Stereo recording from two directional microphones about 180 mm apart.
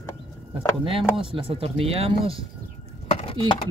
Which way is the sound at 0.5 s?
30° right (ahead or behind).